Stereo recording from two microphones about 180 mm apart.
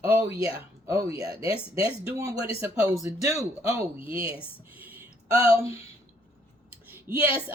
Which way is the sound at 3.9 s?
30° left (ahead or behind).